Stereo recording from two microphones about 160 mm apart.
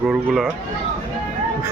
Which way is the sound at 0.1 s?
Centre (ahead or behind).